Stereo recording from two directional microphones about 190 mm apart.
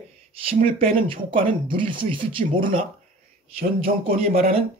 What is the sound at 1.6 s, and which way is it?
Speech, 25° right (ahead or behind).